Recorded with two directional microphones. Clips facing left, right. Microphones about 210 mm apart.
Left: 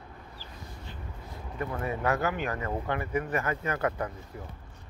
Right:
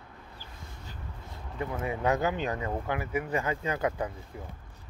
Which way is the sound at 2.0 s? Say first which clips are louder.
Right 2 dB; 20° right (ahead or behind).